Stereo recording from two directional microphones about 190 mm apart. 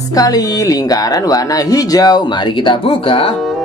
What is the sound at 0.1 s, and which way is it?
Speech, 20° left (ahead or behind).